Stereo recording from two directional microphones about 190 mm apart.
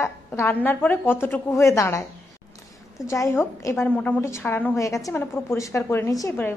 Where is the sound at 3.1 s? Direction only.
15° left (ahead or behind).